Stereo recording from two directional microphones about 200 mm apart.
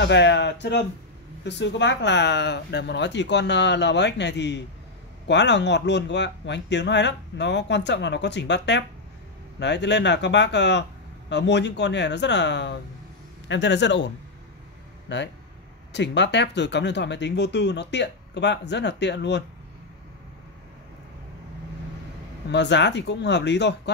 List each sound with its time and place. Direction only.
0.0 s speech: 60° left (ahead or behind)
22.5 s speech: 60° left (ahead or behind)